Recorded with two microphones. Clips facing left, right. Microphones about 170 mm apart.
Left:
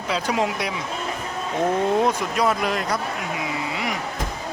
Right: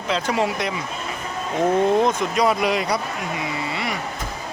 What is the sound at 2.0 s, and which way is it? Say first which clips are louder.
Speech: right 1 dB; 10° left (ahead or behind).